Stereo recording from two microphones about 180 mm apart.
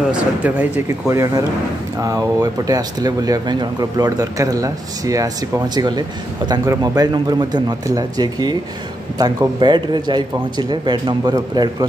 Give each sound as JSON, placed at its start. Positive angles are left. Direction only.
{"t": 0.1, "sound": "a man's voice", "side_deg": -10}